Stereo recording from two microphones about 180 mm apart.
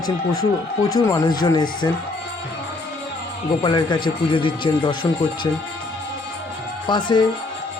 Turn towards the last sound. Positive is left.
turn(degrees=25)  # may be behind; listen again after turning